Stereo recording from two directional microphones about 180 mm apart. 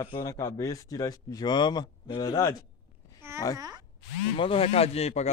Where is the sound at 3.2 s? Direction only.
15° right (ahead or behind).